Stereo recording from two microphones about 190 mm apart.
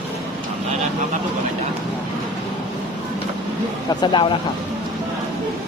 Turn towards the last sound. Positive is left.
turn(degrees=25)  # may be behind; listen again after turning